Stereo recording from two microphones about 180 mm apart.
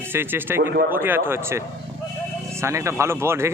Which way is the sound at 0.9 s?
10° right (ahead or behind).